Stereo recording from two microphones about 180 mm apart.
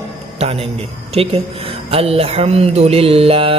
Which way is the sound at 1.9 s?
35° right (ahead or behind).